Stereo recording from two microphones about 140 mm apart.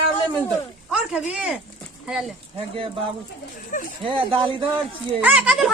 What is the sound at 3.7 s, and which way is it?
Speech, 65° left (ahead or behind).